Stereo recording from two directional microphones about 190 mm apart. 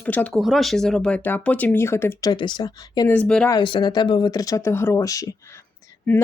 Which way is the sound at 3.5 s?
25° left (ahead or behind).